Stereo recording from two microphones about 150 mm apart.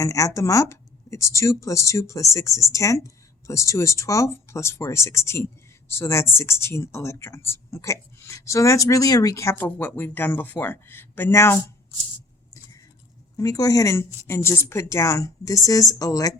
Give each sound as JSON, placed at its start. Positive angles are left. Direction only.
{"t": 0.0, "sound": "speech", "side_deg": 20}
{"t": 13.3, "sound": "speech", "side_deg": 25}